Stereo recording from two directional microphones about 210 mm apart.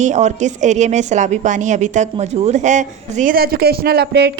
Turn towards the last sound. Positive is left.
turn(degrees=-50)  # may be behind; listen again after turning